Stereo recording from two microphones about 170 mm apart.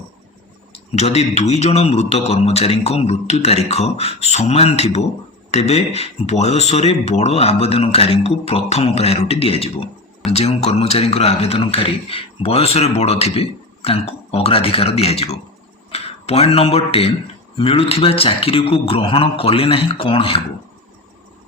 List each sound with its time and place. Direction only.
0.9 s a man's voice: 40° left (ahead or behind)